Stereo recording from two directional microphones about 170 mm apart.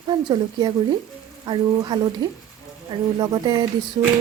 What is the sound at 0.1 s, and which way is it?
Speech, 25° right (ahead or behind).